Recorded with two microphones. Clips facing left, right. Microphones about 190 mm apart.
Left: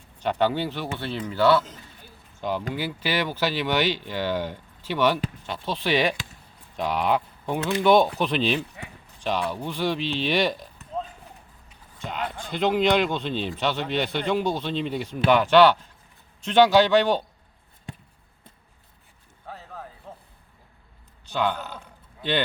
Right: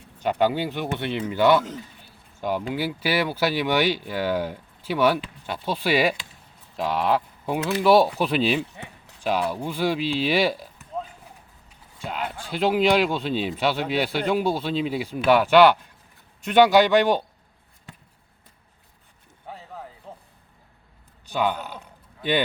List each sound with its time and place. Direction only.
0.2 s speech: 10° right (ahead or behind)
19.5 s a sound: 15° right (ahead or behind)
21.2 s a man's voice: 10° right (ahead or behind)